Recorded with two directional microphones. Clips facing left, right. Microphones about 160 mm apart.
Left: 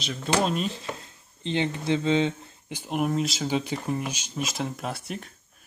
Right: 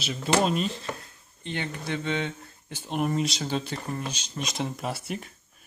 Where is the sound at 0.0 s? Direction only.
5° right (ahead or behind).